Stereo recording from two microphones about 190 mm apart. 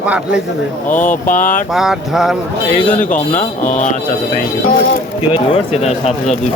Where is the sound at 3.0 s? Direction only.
45° left (ahead or behind).